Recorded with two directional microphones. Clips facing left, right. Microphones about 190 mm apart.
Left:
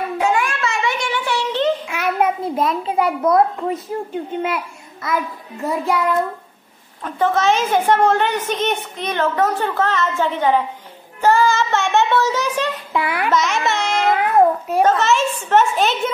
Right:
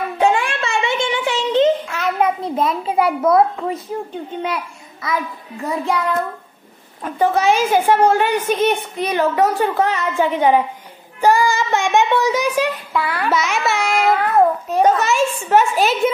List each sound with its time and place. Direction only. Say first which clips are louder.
0.2 s a sound: right 3 dB; 30° right (ahead or behind)
1.9 s a child's voice: even; 10° left (ahead or behind)
7.0 s a woman's voice: right 1 dB; 10° right (ahead or behind)
12.9 s a child's voice: even; 20° left (ahead or behind)
13.3 s a woman's voice: even; 10° right (ahead or behind)
14.2 s babbling: even; 15° left (ahead or behind)
14.8 s a woman's voice: right 1 dB; 10° right (ahead or behind)